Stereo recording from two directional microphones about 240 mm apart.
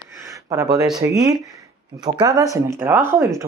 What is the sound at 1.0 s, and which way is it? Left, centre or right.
Speech, centre.